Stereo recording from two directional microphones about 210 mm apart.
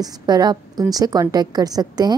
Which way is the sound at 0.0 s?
20° right (ahead or behind).